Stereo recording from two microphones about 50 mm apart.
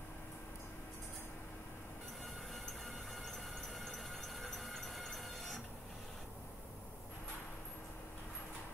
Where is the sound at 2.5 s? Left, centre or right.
Centre.